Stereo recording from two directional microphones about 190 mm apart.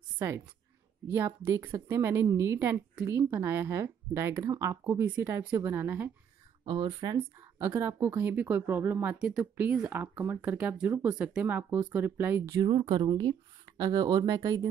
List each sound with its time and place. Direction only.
1.0 s speech: 10° right (ahead or behind)
6.6 s speech: 25° right (ahead or behind)